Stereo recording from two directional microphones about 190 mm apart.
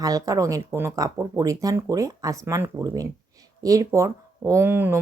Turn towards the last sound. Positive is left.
turn(degrees=-10)  # may be behind; listen again after turning